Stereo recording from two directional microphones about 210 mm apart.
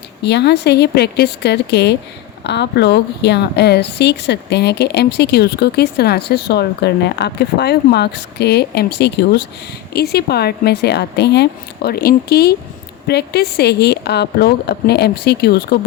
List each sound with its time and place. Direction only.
0.2 s speech: 55° left (ahead or behind)